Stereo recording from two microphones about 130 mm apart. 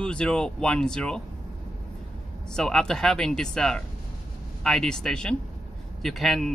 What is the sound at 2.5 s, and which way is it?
A man's voice, 5° left (ahead or behind).